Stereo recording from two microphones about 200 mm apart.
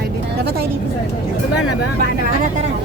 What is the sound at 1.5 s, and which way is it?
Speech, 60° left (ahead or behind).